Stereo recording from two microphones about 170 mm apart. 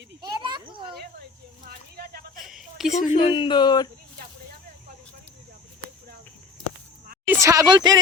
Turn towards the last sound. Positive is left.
turn(degrees=-25)  # may be behind; listen again after turning